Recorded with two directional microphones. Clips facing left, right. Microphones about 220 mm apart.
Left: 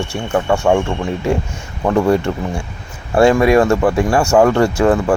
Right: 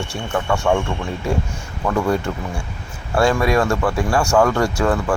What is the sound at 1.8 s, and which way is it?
Speech, 30° left (ahead or behind).